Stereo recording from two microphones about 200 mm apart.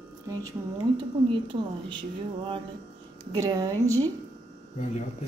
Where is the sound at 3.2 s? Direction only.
20° right (ahead or behind).